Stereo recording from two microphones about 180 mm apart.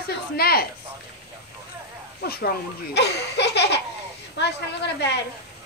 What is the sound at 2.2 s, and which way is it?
Speech, 65° left (ahead or behind).